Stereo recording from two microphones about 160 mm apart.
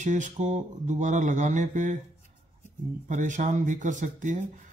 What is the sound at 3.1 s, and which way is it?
Mantra, 50° right (ahead or behind).